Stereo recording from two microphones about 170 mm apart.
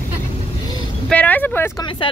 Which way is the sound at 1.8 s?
30° left (ahead or behind).